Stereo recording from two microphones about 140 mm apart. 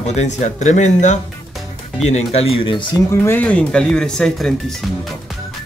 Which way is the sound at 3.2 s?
10° left (ahead or behind).